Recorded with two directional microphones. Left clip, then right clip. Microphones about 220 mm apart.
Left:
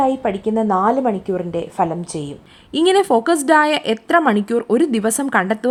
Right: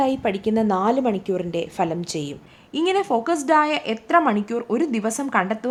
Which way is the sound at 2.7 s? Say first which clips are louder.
Left 6 dB; 25° left (ahead or behind).